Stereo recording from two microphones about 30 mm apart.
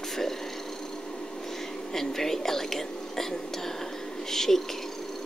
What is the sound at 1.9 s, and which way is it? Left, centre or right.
A woman's voice, centre.